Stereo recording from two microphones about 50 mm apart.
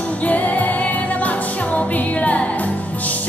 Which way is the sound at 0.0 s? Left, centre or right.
Left.